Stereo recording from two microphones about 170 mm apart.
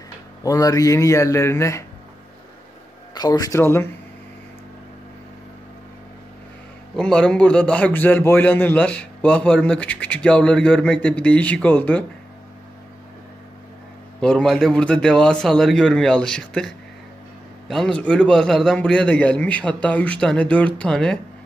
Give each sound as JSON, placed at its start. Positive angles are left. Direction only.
{"t": 0.4, "sound": "a man's voice", "side_deg": 20}
{"t": 3.2, "sound": "speech", "side_deg": 20}
{"t": 7.0, "sound": "a man's voice", "side_deg": 5}
{"t": 14.2, "sound": "a man's voice", "side_deg": 5}